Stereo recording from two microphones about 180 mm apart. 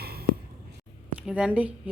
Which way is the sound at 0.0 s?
60° right (ahead or behind).